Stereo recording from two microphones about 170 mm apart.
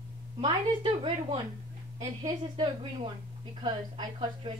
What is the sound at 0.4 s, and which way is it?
A woman's voice, 30° right (ahead or behind).